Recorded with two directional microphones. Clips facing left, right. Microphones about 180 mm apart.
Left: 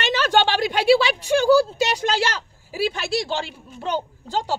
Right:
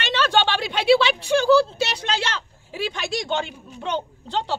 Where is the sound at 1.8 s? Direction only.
40° left (ahead or behind).